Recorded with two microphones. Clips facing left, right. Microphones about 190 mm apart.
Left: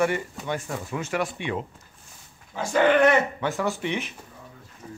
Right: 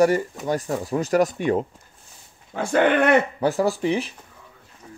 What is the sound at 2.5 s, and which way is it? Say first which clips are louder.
Speech: right 1 dB; 55° right (ahead or behind).